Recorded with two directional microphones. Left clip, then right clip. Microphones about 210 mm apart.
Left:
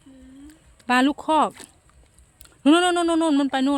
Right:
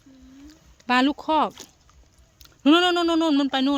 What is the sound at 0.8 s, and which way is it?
A man's voice, 10° left (ahead or behind).